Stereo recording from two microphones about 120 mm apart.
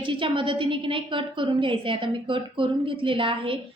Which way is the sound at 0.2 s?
45° right (ahead or behind).